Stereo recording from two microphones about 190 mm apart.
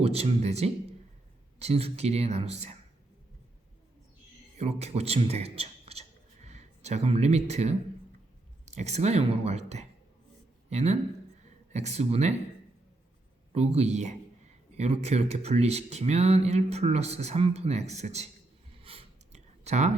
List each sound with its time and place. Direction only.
0.0 s speech: 30° right (ahead or behind)
4.5 s a man's voice: 35° right (ahead or behind)
13.5 s speech: 35° right (ahead or behind)
18.8 s a sound: 30° right (ahead or behind)